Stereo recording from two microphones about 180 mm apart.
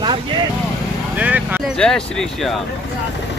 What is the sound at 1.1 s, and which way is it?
Vehicle, 10° right (ahead or behind).